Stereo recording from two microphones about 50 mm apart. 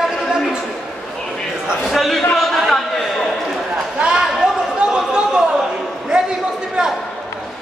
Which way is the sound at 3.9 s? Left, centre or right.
Centre.